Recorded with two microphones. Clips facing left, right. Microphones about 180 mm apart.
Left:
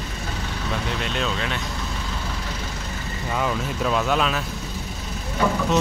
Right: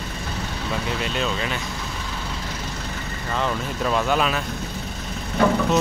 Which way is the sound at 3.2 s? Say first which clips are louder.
Even; 5° left (ahead or behind).